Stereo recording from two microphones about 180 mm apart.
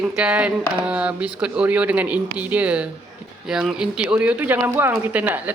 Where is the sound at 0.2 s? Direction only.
5° right (ahead or behind).